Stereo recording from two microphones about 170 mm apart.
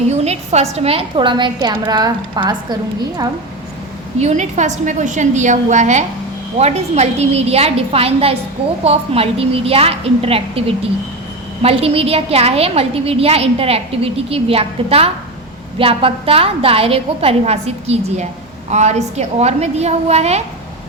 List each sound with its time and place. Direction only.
0.1 s a woman's voice: 40° right (ahead or behind)
4.2 s a woman's voice: 45° right (ahead or behind)